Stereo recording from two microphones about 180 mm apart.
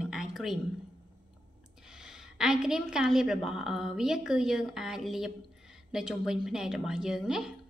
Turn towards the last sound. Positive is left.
turn(degrees=-5)  # may be behind; listen again after turning